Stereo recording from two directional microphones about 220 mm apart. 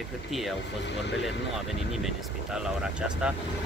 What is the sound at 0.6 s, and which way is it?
Speech, 50° left (ahead or behind).